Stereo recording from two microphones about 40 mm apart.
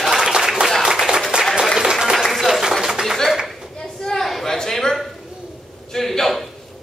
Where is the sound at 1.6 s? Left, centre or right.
Centre.